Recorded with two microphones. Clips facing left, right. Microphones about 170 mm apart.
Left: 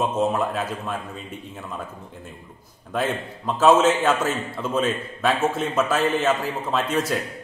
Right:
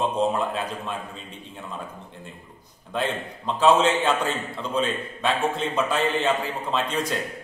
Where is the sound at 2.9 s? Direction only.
5° left (ahead or behind).